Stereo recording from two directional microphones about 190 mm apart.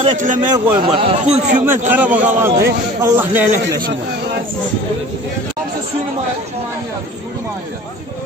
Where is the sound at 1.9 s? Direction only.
10° right (ahead or behind).